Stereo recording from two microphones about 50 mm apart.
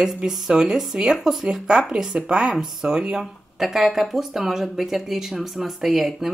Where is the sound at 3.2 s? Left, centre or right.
Centre.